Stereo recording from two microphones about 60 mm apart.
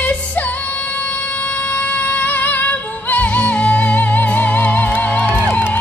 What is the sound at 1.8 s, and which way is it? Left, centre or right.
Music, left.